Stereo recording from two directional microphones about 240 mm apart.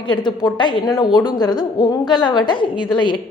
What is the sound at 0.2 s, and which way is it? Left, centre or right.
A woman's voice, centre.